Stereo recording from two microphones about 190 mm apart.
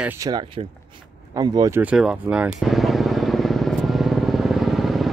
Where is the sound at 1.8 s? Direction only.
5° right (ahead or behind).